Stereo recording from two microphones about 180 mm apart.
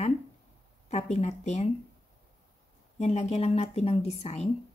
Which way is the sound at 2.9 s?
35° left (ahead or behind).